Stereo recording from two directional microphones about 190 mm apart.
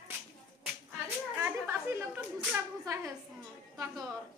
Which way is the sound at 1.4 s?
15° right (ahead or behind).